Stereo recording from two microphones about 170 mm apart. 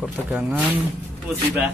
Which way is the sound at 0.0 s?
5° right (ahead or behind).